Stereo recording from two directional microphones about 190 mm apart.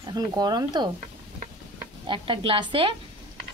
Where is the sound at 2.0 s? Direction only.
25° right (ahead or behind).